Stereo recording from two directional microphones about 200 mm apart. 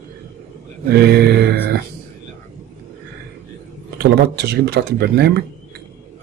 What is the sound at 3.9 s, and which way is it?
Speech, 55° right (ahead or behind).